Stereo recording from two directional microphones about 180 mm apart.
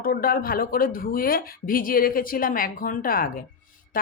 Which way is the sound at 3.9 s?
50° left (ahead or behind).